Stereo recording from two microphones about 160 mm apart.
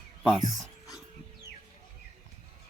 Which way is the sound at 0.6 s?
Centre (ahead or behind).